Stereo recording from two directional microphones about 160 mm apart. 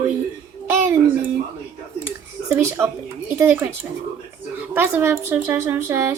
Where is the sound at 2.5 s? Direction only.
15° right (ahead or behind).